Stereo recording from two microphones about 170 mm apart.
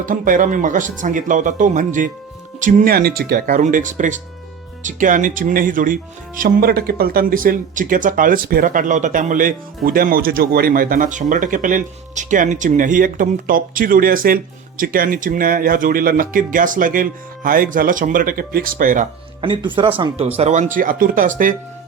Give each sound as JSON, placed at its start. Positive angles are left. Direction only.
{"t": 0.0, "sound": "speech", "side_deg": -50}
{"t": 19.4, "sound": "speech", "side_deg": -30}
{"t": 20.3, "sound": "speech", "side_deg": -40}
{"t": 20.7, "sound": "speech", "side_deg": -55}